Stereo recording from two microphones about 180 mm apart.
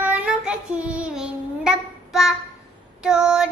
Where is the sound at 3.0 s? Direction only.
5° right (ahead or behind).